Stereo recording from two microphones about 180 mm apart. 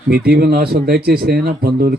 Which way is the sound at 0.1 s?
60° right (ahead or behind).